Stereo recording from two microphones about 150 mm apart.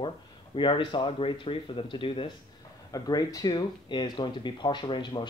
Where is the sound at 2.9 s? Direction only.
25° left (ahead or behind).